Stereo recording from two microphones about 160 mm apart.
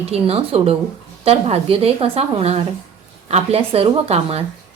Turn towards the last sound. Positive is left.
turn(degrees=-40)  # may be behind; listen again after turning